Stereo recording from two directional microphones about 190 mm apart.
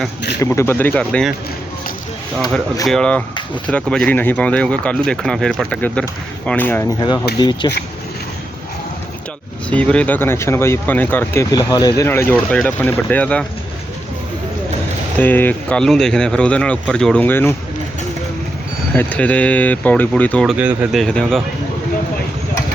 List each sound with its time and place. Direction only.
0.4 s speech: 15° left (ahead or behind)
2.8 s speech: 5° left (ahead or behind)
7.3 s speech: 20° left (ahead or behind)
9.6 s speech: 5° left (ahead or behind)
15.2 s speech: 10° left (ahead or behind)
18.9 s speech: 10° left (ahead or behind)